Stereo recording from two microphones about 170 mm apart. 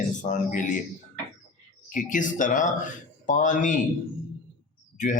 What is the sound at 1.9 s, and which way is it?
Speech, 50° left (ahead or behind).